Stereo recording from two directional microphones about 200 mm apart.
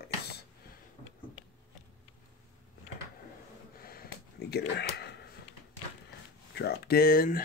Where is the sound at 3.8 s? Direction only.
50° left (ahead or behind).